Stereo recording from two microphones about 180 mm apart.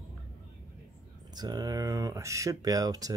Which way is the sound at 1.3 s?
20° right (ahead or behind).